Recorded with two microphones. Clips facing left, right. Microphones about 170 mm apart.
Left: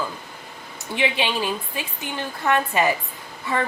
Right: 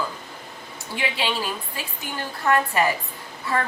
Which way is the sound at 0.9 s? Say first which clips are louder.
Left 3 dB; 20° left (ahead or behind).